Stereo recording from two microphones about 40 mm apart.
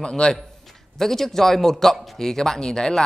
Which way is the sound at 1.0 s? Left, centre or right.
Centre.